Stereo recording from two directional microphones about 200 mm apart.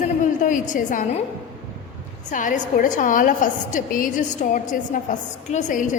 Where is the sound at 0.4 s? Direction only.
40° left (ahead or behind).